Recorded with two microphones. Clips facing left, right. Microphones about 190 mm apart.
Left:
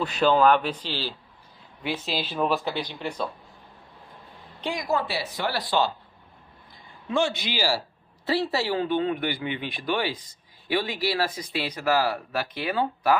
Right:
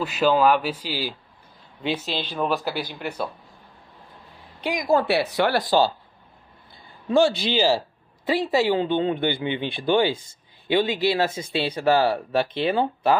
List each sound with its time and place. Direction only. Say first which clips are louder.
0.0 s a man's voice: right 1 dB; 5° right (ahead or behind)
2.0 s speech: left 3 dB; 5° left (ahead or behind)
4.6 s speech: right 3 dB; 10° right (ahead or behind)
5.0 s speech: right 8 dB; 65° right (ahead or behind)
5.6 s speech: right 3 dB; 40° right (ahead or behind)
6.7 s a sound: right 7 dB; 35° right (ahead or behind)
8.3 s speech: right 4 dB; 15° right (ahead or behind)